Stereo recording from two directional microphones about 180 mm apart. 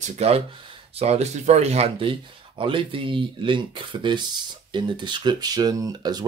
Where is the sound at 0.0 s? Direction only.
40° right (ahead or behind).